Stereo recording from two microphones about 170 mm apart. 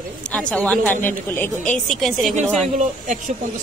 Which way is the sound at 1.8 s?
Centre (ahead or behind).